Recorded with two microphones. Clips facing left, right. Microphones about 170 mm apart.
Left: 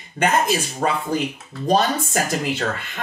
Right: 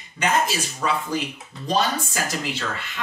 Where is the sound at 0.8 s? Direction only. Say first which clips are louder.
Left 2 dB; 50° left (ahead or behind).